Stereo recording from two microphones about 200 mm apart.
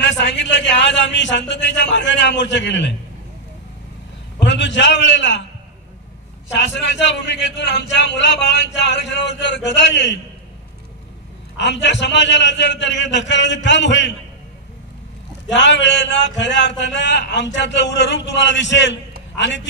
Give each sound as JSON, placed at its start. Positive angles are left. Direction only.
{"t": 0.0, "sound": "a man's voice", "side_deg": 60}
{"t": 4.4, "sound": "a man's voice", "side_deg": 60}
{"t": 6.5, "sound": "a man's voice", "side_deg": 60}
{"t": 11.5, "sound": "a man's voice", "side_deg": 60}
{"t": 15.4, "sound": "a man's voice", "side_deg": 65}